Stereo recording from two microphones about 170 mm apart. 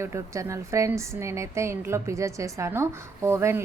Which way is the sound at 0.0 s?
15° right (ahead or behind).